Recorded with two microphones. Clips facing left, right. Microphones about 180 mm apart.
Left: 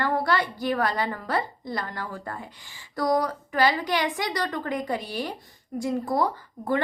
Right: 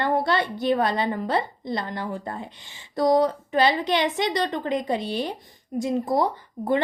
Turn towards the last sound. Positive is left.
turn(degrees=-20)  # may be behind; listen again after turning